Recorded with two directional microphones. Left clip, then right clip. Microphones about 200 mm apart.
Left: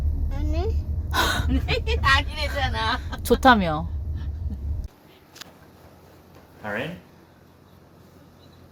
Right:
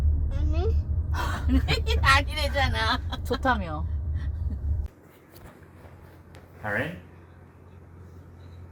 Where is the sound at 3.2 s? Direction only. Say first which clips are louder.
Left 12 dB; 55° left (ahead or behind).